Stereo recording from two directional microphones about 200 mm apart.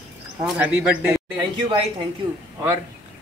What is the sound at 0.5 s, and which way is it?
Speech, 10° right (ahead or behind).